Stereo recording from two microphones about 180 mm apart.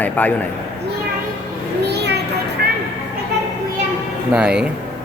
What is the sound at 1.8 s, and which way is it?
Children playing, 65° right (ahead or behind).